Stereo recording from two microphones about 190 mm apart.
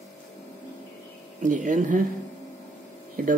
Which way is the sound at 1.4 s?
40° right (ahead or behind).